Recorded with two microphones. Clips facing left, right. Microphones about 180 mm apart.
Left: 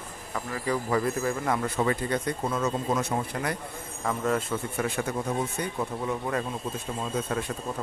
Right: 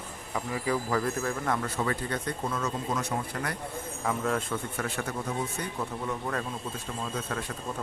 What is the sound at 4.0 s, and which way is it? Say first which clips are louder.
Speech: left 2 dB; centre (ahead or behind).